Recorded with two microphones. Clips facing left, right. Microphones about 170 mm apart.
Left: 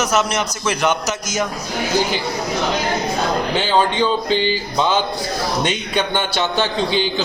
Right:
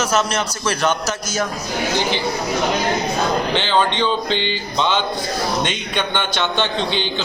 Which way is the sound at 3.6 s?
10° left (ahead or behind).